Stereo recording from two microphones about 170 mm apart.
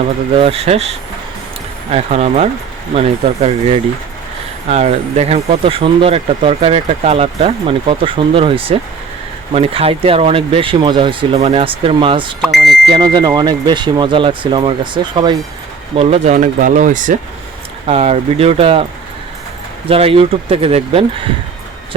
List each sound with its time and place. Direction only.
0.3 s speech: 35° right (ahead or behind)
12.4 s speech: centre (ahead or behind)
12.9 s speech: 25° right (ahead or behind)
16.0 s speech: 40° right (ahead or behind)
17.8 s speech: 40° right (ahead or behind)
19.9 s speech: 35° right (ahead or behind)